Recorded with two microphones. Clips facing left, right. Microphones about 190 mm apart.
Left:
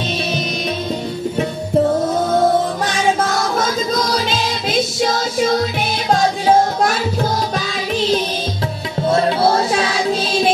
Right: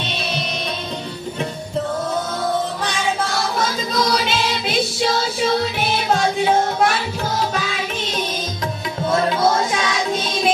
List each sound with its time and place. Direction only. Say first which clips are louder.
3.2 s music: left 4 dB; 45° left (ahead or behind)
6.1 s music: left 4 dB; 40° left (ahead or behind)